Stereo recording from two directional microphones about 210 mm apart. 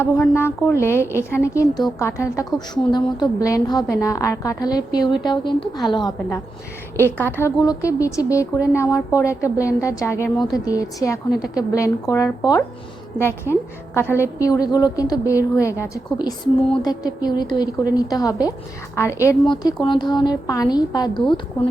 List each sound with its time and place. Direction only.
0.0 s a woman's voice: 10° left (ahead or behind)
16.7 s a woman's voice: 20° left (ahead or behind)